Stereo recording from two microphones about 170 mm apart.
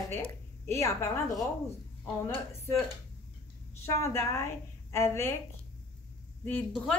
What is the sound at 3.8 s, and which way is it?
A woman's voice, 15° left (ahead or behind).